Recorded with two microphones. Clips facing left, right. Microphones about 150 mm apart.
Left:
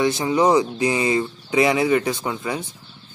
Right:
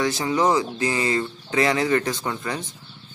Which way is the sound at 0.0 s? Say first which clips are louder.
Left 3 dB; 20° left (ahead or behind).